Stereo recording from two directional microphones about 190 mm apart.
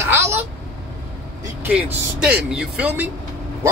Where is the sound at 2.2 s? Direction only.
5° right (ahead or behind).